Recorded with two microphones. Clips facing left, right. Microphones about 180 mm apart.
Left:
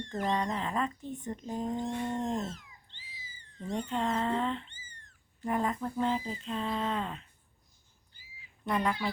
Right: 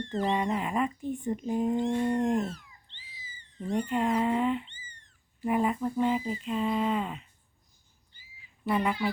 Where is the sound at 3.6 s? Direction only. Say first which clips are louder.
Right 4 dB; 10° right (ahead or behind).